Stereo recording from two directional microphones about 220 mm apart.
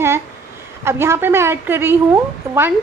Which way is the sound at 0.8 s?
10° right (ahead or behind).